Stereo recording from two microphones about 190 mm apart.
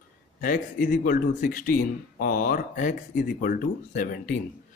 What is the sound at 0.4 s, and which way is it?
A man's voice, 45° left (ahead or behind).